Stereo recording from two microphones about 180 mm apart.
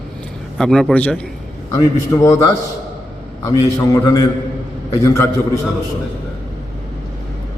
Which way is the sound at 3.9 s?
20° left (ahead or behind).